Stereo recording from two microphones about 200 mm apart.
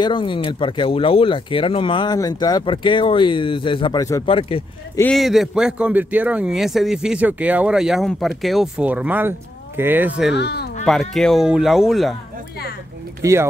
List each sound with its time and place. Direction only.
0.0 s speech: 25° left (ahead or behind)
4.9 s speech: 5° left (ahead or behind)
10.3 s speech: 55° left (ahead or behind)
10.9 s speech: centre (ahead or behind)
13.2 s speech: 15° right (ahead or behind)